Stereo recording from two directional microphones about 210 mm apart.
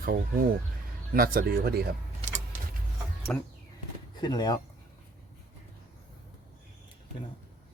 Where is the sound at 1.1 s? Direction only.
45° right (ahead or behind).